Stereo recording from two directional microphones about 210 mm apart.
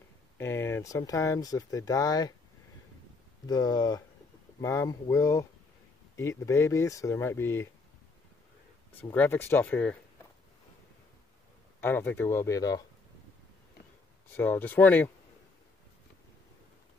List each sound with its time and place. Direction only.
0.4 s speech: 10° left (ahead or behind)
3.4 s speech: 20° left (ahead or behind)
8.9 s speech: 10° left (ahead or behind)
11.8 s speech: 10° left (ahead or behind)
14.3 s speech: 10° left (ahead or behind)